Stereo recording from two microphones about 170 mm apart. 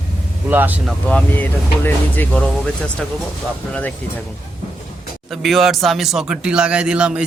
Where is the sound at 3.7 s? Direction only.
10° left (ahead or behind).